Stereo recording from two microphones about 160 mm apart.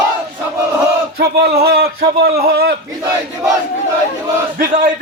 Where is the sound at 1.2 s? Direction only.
85° right.